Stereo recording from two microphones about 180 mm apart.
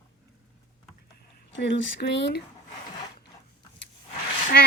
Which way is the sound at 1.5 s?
85° left.